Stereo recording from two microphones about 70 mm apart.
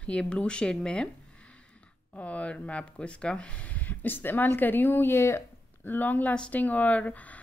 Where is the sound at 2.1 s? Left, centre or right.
Centre; by 5.5 s left.